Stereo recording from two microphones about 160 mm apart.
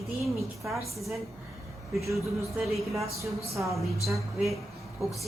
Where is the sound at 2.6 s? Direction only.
Centre (ahead or behind).